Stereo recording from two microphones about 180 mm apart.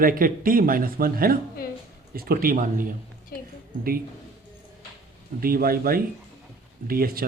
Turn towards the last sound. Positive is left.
turn(degrees=-55)  # may be behind; listen again after turning